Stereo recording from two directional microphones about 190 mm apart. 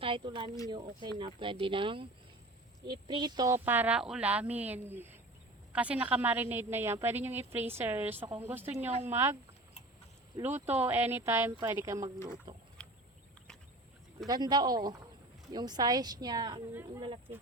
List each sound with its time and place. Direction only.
0.0 s a woman's voice: 25° right (ahead or behind)
10.4 s a woman's voice: 10° right (ahead or behind)
14.3 s a woman's voice: 20° right (ahead or behind)